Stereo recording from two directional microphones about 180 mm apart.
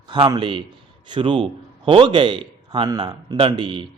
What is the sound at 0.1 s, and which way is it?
A man's voice, 25° right (ahead or behind).